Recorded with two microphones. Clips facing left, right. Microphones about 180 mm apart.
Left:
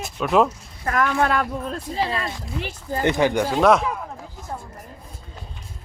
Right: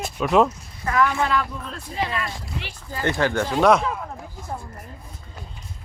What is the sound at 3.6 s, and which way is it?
Speech, centre (ahead or behind).